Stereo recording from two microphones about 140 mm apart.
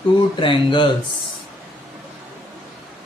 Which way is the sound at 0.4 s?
35° left (ahead or behind).